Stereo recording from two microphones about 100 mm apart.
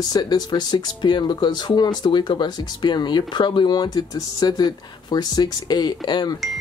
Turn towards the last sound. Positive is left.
turn(degrees=45)  # may be behind; listen again after turning